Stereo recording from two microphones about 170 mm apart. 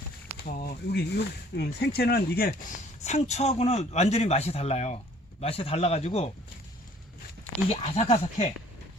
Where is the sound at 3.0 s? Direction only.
40° left (ahead or behind).